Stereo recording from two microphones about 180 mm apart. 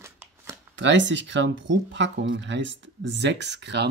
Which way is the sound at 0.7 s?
85° right.